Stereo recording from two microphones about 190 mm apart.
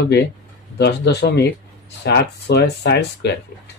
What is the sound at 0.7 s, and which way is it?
A man's voice, 60° left (ahead or behind).